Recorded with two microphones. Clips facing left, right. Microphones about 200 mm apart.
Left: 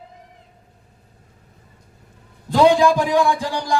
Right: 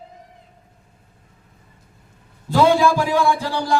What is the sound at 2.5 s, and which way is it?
A man's voice, 15° left (ahead or behind).